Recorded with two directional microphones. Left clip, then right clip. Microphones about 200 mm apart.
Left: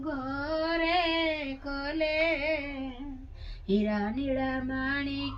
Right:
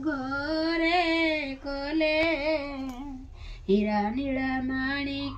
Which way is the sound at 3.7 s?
Centre (ahead or behind).